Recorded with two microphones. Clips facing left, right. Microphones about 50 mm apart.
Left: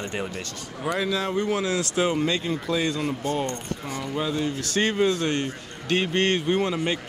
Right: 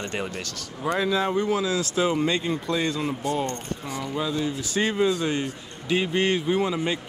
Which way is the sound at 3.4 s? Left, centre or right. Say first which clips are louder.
Even; left.